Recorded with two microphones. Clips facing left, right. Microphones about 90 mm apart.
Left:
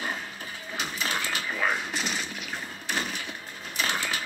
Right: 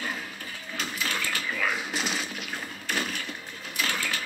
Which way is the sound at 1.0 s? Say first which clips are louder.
Left 1 dB; 25° left (ahead or behind).